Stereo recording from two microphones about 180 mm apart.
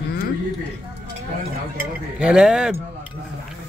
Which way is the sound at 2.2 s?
5° right (ahead or behind).